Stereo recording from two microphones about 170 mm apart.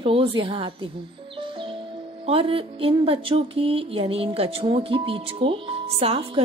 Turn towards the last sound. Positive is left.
turn(degrees=-35)  # may be behind; listen again after turning